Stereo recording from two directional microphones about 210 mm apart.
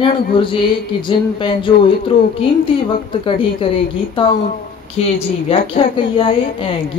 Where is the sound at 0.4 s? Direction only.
25° left (ahead or behind).